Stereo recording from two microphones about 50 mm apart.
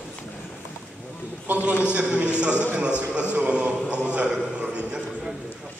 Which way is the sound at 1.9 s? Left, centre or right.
Right.